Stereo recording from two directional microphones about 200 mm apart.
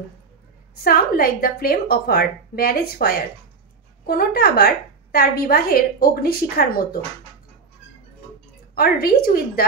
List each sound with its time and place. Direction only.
0.8 s a woman's voice: 50° left (ahead or behind)
8.7 s a woman's voice: 50° left (ahead or behind)